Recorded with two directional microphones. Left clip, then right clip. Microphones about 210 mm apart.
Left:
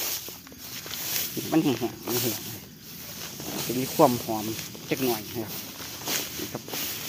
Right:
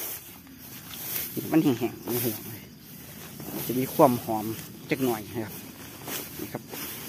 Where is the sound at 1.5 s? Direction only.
25° right (ahead or behind).